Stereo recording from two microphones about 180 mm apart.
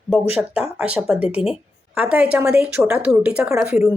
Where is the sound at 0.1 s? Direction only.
5° right (ahead or behind).